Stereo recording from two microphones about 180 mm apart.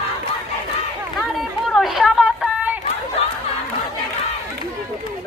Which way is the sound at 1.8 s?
Centre (ahead or behind).